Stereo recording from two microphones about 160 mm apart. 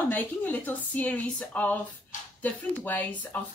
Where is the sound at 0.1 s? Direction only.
10° left (ahead or behind).